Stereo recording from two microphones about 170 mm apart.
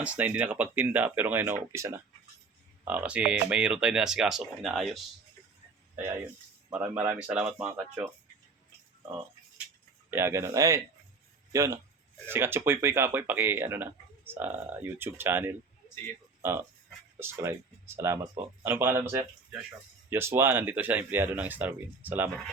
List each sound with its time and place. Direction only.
0.0 s speech: 10° right (ahead or behind)
2.8 s speech: 10° right (ahead or behind)
6.0 s speech: 15° right (ahead or behind)
10.1 s speech: 15° right (ahead or behind)